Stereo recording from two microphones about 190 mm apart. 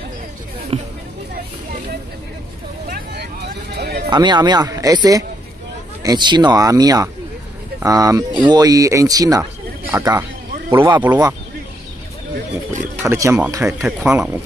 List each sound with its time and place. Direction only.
0.7 s speech: 30° right (ahead or behind)
3.7 s music: 55° right (ahead or behind)
4.1 s speech: 25° right (ahead or behind)
12.9 s speech: 15° right (ahead or behind)
13.7 s speech: 5° right (ahead or behind)